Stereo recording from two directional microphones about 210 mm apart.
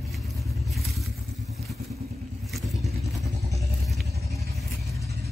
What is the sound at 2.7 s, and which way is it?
Vehicle, 30° right (ahead or behind).